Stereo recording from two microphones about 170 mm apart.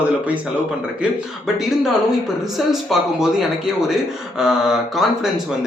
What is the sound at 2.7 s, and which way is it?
Speech, centre (ahead or behind).